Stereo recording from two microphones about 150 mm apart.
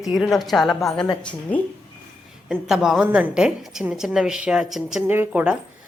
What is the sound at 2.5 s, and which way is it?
A woman's voice, 5° right (ahead or behind).